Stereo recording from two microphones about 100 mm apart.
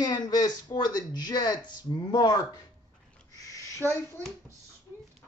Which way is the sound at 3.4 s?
30° left (ahead or behind).